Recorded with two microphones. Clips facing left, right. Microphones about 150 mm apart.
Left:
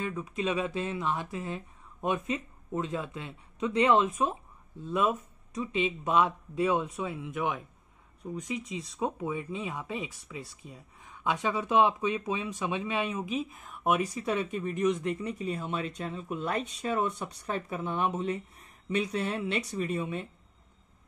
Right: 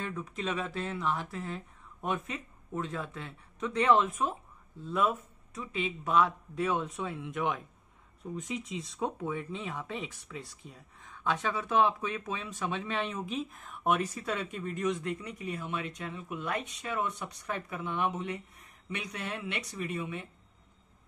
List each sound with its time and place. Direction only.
0.0 s speech: 10° left (ahead or behind); by 20.2 s 35° left (ahead or behind)